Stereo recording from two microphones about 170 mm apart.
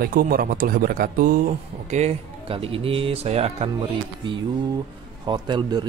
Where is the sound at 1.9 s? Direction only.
40° right (ahead or behind).